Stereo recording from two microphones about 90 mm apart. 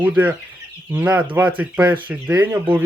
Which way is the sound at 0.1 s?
15° right (ahead or behind).